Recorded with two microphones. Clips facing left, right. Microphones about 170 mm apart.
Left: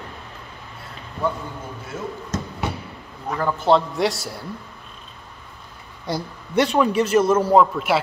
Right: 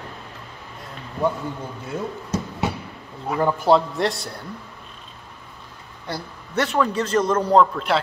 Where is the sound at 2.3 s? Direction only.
10° right (ahead or behind).